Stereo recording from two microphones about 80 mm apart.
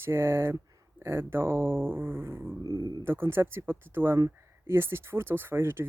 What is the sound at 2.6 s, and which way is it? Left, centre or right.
Speech, right.